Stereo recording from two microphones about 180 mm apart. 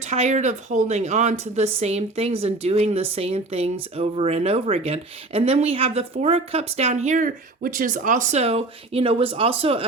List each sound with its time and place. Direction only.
0.0 s speech: 40° right (ahead or behind)